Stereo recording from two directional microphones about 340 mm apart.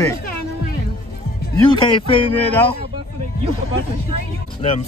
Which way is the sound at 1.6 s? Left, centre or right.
Centre.